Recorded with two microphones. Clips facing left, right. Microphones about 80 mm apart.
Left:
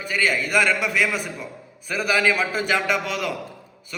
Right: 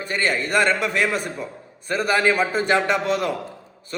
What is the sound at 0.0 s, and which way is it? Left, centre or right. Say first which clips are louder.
A man's voice: even; right.